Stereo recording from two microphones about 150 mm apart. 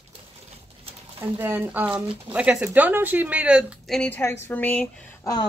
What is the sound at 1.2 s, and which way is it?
Speech, 15° right (ahead or behind).